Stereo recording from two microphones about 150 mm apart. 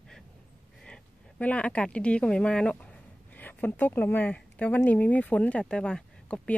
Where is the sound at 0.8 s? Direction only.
10° left (ahead or behind).